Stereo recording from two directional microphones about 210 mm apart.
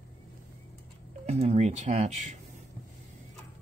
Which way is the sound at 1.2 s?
30° right (ahead or behind).